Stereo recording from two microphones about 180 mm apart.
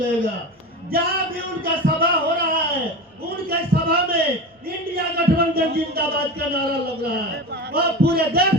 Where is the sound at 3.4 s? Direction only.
60° right (ahead or behind).